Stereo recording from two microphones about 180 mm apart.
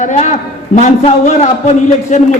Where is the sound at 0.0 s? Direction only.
40° left (ahead or behind).